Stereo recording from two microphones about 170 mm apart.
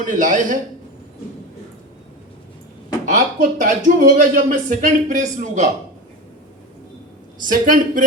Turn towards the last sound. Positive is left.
turn(degrees=-50)  # may be behind; listen again after turning